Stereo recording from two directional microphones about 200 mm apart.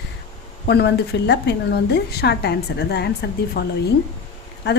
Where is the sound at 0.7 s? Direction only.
55° left (ahead or behind).